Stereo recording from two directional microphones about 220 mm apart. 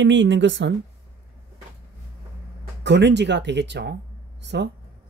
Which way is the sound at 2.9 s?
50° right (ahead or behind).